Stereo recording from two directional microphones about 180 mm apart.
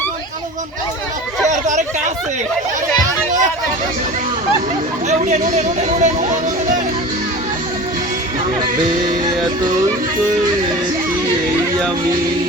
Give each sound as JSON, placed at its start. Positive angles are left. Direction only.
{"t": 1.5, "sound": "chatter", "side_deg": -40}
{"t": 5.0, "sound": "speech", "side_deg": -45}